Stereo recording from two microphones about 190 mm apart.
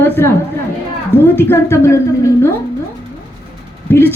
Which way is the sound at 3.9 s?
10° left (ahead or behind).